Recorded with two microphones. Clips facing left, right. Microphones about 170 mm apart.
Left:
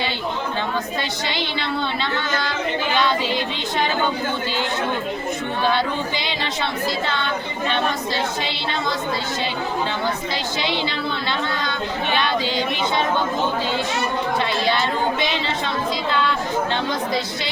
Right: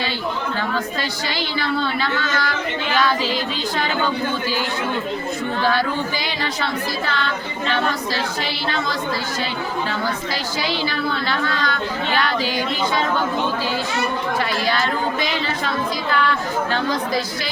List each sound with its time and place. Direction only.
1.3 s speech: 25° left (ahead or behind)
5.6 s speech: 20° left (ahead or behind)
10.6 s speech: 20° left (ahead or behind)
14.7 s speech: 25° left (ahead or behind)